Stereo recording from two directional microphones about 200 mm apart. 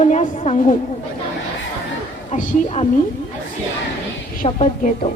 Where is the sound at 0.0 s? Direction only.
35° left (ahead or behind).